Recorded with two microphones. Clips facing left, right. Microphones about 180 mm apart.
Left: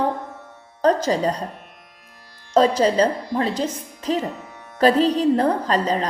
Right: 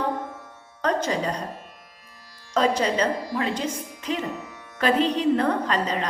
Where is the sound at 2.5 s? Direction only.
35° left (ahead or behind).